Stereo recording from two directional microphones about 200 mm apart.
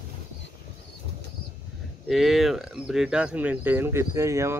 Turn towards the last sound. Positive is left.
turn(degrees=-15)  # may be behind; listen again after turning